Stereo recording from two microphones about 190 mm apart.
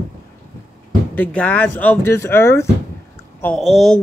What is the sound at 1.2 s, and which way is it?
Speech, 10° left (ahead or behind).